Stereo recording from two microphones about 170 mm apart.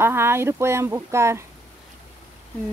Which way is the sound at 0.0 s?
15° right (ahead or behind).